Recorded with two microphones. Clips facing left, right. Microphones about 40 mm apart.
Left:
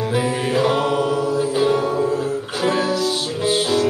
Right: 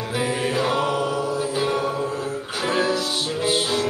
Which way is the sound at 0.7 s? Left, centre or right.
Centre.